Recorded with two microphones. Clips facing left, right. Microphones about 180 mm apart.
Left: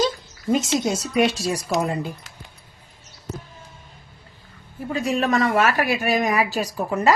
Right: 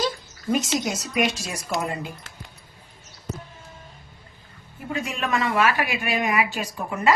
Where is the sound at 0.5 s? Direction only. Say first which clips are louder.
Left 3 dB; 25° left (ahead or behind).